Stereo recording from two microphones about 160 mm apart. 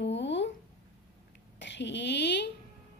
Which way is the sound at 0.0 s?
90° left.